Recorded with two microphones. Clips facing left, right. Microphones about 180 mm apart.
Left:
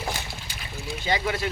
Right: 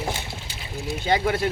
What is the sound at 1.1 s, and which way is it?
Speech, 50° right (ahead or behind).